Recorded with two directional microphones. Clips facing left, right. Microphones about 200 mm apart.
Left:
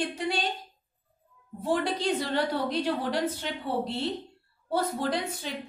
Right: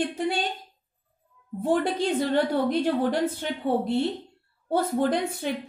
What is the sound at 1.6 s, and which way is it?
A woman's voice, 55° right (ahead or behind).